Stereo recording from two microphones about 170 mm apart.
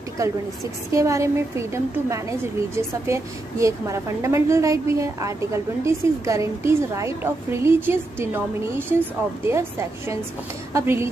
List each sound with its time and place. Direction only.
0.2 s a woman's voice: 20° right (ahead or behind)